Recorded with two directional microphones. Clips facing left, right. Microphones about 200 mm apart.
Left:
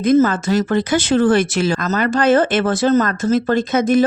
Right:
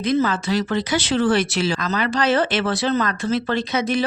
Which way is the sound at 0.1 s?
45° left (ahead or behind).